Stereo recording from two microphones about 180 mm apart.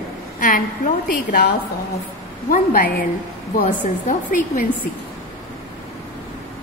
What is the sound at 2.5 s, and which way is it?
A woman's voice, 50° left (ahead or behind).